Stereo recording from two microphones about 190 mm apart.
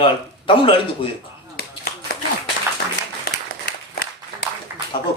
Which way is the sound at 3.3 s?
55° left (ahead or behind).